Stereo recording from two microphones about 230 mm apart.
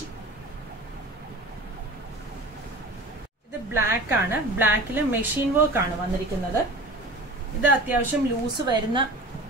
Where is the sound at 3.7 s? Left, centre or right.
Centre.